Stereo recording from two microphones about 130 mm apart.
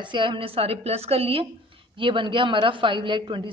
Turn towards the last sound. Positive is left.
turn(degrees=-40)  # may be behind; listen again after turning